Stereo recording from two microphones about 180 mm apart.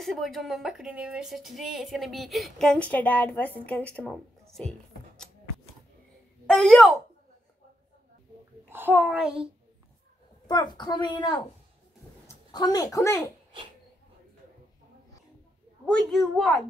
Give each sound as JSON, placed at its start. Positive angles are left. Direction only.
{"t": 0.0, "sound": "speech", "side_deg": 0}
{"t": 6.4, "sound": "speech", "side_deg": 5}
{"t": 8.6, "sound": "a child's voice", "side_deg": -10}
{"t": 10.4, "sound": "a woman's voice", "side_deg": 25}
{"t": 16.1, "sound": "speech", "side_deg": 0}